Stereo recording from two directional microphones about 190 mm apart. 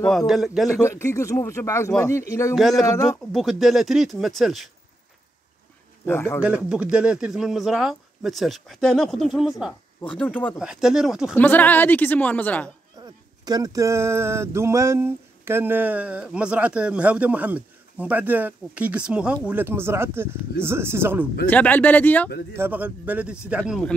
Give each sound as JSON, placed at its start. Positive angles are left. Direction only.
{"t": 0.3, "sound": "speech", "side_deg": 0}
{"t": 0.7, "sound": "a man's voice", "side_deg": 15}
{"t": 2.5, "sound": "speech", "side_deg": 0}
{"t": 2.8, "sound": "a man's voice", "side_deg": 15}
{"t": 3.3, "sound": "speech", "side_deg": 0}
{"t": 6.0, "sound": "a man's voice", "side_deg": 10}
{"t": 6.4, "sound": "speech", "side_deg": -5}
{"t": 10.6, "sound": "speech", "side_deg": -5}
{"t": 11.3, "sound": "a man's voice", "side_deg": 10}
{"t": 13.0, "sound": "speech", "side_deg": -20}
{"t": 21.5, "sound": "a man's voice", "side_deg": 10}
{"t": 22.5, "sound": "speech", "side_deg": -10}